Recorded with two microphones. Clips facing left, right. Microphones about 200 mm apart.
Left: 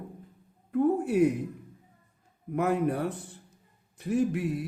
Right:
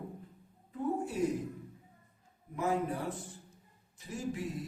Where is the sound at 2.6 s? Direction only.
65° left (ahead or behind).